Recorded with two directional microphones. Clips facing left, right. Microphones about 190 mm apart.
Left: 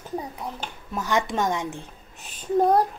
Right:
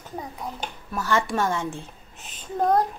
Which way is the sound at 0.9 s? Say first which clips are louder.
Even; 15° left (ahead or behind).